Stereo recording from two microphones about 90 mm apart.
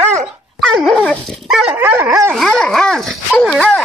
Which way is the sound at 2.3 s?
5° left (ahead or behind).